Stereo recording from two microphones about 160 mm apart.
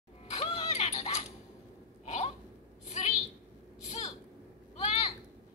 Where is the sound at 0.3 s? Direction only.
40° left (ahead or behind).